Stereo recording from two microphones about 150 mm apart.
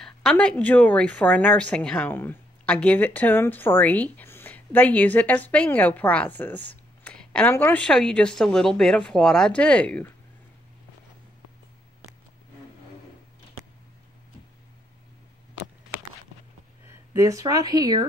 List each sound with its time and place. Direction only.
0.0 s speech: 5° left (ahead or behind)
16.8 s speech: 15° right (ahead or behind)